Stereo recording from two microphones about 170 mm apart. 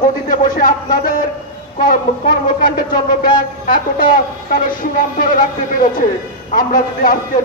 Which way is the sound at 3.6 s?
55° left (ahead or behind).